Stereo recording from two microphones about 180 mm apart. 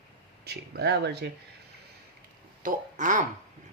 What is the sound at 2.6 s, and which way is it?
Speech, 45° right (ahead or behind).